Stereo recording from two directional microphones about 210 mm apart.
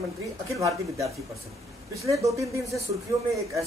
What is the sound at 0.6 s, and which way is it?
Speech, 15° right (ahead or behind).